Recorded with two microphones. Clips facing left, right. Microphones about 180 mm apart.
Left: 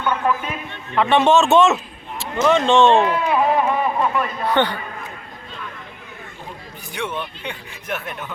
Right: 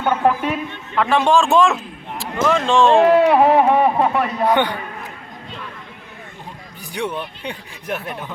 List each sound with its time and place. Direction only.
0.0 s a man's voice: 50° right (ahead or behind)
0.9 s a man's voice: centre (ahead or behind)
3.2 s a sound: 70° right (ahead or behind)
4.5 s a man's voice: 10° right (ahead or behind)
6.9 s speech: 35° right (ahead or behind)